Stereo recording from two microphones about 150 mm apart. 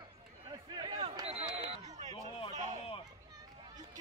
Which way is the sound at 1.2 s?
45° right (ahead or behind).